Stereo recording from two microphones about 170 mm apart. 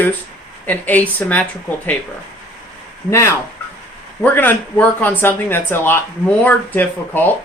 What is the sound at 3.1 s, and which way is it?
Speech, 20° left (ahead or behind).